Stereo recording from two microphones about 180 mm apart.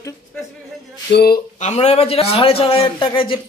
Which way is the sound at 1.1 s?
60° left (ahead or behind).